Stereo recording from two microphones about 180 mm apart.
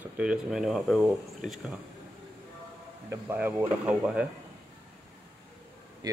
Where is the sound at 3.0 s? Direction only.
10° right (ahead or behind).